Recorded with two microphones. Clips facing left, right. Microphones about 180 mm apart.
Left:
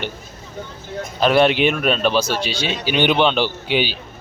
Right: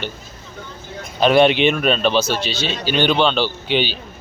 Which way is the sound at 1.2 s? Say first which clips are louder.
Right 2 dB; centre (ahead or behind).